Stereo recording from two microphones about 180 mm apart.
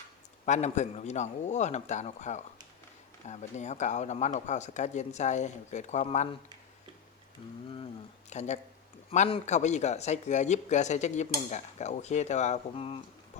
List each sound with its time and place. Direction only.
0.4 s speech: 40° left (ahead or behind)
8.3 s speech: 40° left (ahead or behind)